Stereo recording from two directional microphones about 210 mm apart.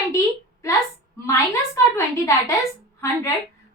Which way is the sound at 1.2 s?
15° left (ahead or behind).